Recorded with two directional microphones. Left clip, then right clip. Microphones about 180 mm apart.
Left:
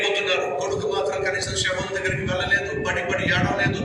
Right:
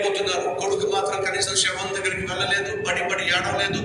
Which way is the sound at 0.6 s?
20° right (ahead or behind).